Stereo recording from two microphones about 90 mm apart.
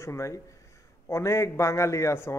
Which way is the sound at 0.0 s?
35° left (ahead or behind).